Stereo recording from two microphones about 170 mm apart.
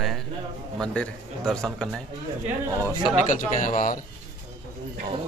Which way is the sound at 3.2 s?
50° left (ahead or behind).